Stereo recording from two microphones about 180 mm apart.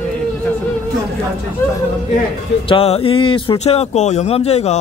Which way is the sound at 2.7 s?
35° left (ahead or behind).